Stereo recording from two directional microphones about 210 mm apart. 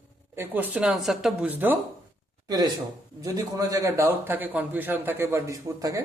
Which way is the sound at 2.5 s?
20° right (ahead or behind).